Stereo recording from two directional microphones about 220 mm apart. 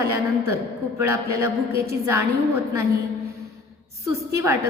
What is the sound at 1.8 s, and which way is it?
Speech, 10° right (ahead or behind).